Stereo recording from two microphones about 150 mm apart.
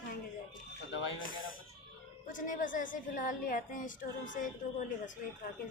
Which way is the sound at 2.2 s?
60° left (ahead or behind).